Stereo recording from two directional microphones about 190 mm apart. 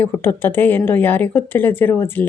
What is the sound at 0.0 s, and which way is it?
A woman's voice, 10° left (ahead or behind).